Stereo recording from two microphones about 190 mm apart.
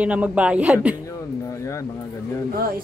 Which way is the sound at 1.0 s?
15° left (ahead or behind).